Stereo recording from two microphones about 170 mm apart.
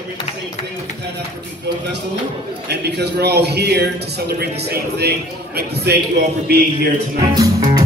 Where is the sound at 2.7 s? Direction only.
75° right (ahead or behind).